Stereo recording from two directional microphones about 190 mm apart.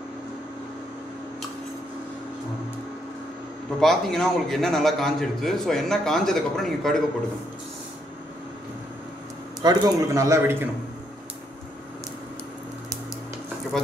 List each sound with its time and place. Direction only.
3.8 s a man's voice: centre (ahead or behind)
9.6 s speech: 20° right (ahead or behind)